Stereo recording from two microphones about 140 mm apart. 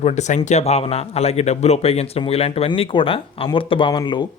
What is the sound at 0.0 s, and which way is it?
A man's voice, 55° left (ahead or behind).